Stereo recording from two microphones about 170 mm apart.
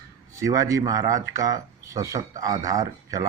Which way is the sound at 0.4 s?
20° right (ahead or behind).